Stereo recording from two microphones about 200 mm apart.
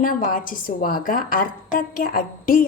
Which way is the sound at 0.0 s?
45° left (ahead or behind).